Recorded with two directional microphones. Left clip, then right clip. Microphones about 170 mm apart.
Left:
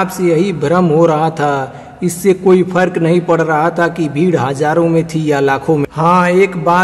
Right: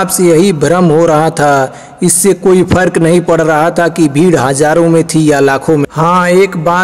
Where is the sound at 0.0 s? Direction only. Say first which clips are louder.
Right 5 dB; 40° right (ahead or behind).